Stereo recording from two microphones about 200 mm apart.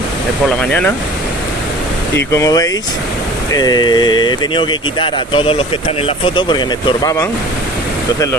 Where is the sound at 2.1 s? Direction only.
15° left (ahead or behind).